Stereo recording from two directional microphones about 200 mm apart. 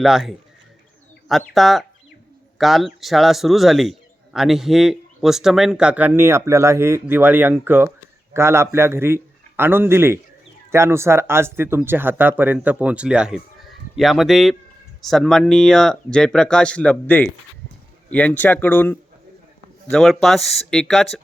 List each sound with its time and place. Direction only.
0.0 s a man's voice: centre (ahead or behind)